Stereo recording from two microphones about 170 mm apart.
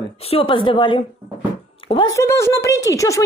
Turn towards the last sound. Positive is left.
turn(degrees=20)  # may be behind; listen again after turning